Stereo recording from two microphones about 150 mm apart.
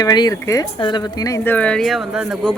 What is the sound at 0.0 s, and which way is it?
Speech, 25° left (ahead or behind).